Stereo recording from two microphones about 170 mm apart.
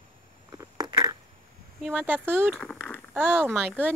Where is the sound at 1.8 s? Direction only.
10° right (ahead or behind).